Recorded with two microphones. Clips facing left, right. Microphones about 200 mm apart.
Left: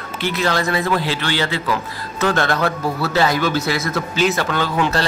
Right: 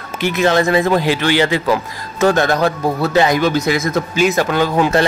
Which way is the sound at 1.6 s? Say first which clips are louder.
Right 5 dB; 45° right (ahead or behind).